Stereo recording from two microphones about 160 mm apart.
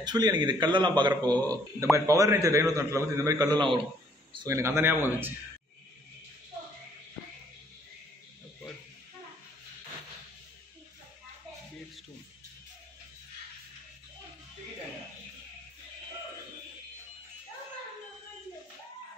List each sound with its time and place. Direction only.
0.0 s a man's voice: 25° right (ahead or behind)
4.5 s speech: 15° right (ahead or behind)